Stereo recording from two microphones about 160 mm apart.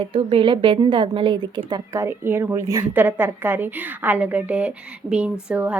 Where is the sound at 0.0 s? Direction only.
35° right (ahead or behind).